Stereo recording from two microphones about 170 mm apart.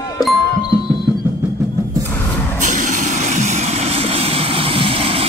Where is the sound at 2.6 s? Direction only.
50° right (ahead or behind); by 5.2 s 35° right (ahead or behind).